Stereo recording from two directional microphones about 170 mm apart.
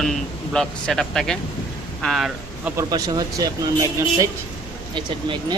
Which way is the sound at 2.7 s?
25° right (ahead or behind).